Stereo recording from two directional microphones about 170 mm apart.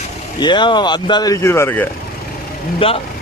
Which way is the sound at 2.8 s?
30° left (ahead or behind).